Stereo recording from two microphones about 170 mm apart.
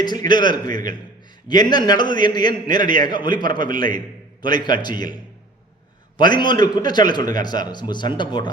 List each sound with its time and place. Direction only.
0.0 s a man's voice: 25° left (ahead or behind)